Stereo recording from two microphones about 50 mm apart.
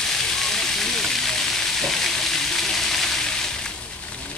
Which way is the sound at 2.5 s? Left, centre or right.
Centre.